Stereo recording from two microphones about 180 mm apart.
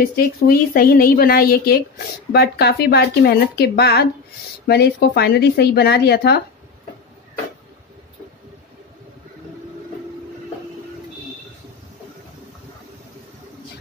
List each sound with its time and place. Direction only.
0.0 s a woman's voice: 55° left (ahead or behind)